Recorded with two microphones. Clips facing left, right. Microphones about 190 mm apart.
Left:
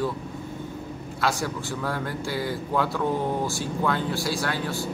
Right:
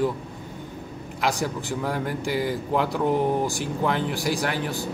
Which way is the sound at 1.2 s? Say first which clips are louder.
Right 1 dB; 15° right (ahead or behind).